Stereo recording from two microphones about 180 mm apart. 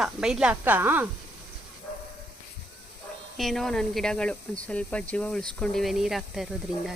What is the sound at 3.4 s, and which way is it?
Speech, centre (ahead or behind).